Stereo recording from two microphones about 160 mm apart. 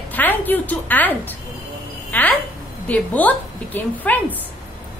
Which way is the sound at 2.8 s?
10° left (ahead or behind).